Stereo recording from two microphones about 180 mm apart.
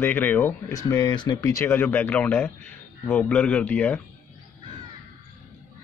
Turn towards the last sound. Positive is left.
turn(degrees=10)  # may be behind; listen again after turning